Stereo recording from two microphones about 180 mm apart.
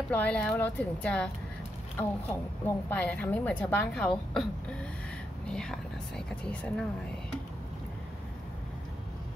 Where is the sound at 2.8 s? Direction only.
10° left (ahead or behind).